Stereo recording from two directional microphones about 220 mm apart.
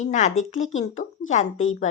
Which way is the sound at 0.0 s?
35° left (ahead or behind).